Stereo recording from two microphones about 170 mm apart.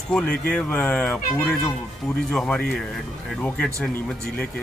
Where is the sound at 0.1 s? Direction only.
5° left (ahead or behind).